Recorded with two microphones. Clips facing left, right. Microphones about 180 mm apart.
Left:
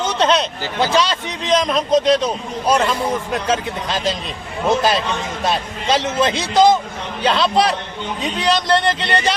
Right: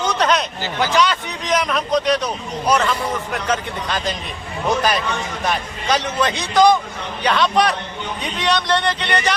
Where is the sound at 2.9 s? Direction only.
25° left (ahead or behind).